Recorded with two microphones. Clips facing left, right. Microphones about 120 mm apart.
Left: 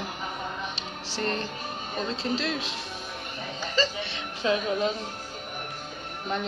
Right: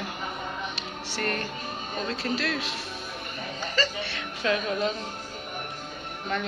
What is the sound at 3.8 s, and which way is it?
Speech, 20° left (ahead or behind).